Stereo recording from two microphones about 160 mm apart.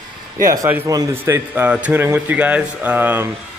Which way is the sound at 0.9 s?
20° right (ahead or behind).